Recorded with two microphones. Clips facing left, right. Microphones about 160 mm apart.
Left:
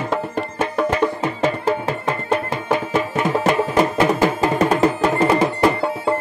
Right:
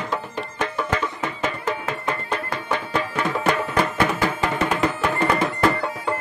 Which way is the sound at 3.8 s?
35° left (ahead or behind).